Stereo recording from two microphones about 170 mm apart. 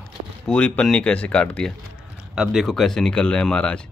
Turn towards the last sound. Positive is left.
turn(degrees=5)  # may be behind; listen again after turning